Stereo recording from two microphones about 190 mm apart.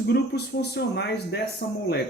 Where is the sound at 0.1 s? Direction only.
60° left (ahead or behind).